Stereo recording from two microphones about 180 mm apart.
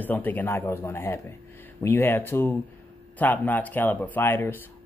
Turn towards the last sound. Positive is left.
turn(degrees=10)  # may be behind; listen again after turning